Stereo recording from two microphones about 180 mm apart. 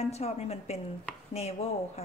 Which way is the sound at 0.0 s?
35° left (ahead or behind).